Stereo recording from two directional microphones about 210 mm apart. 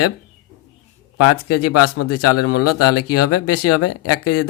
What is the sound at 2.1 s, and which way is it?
Speech, 90° left.